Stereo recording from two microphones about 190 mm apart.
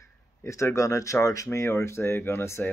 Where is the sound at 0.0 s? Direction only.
15° left (ahead or behind).